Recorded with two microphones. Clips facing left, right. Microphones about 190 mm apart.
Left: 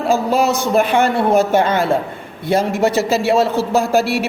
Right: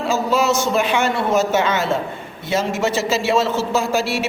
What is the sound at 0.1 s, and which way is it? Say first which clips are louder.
A woman's voice: left 3 dB; 55° left (ahead or behind).